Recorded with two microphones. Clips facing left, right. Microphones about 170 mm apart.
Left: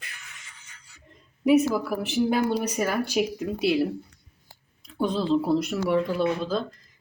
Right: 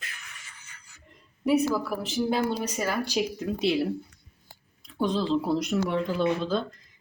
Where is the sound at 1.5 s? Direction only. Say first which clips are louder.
Left 3 dB; 10° left (ahead or behind).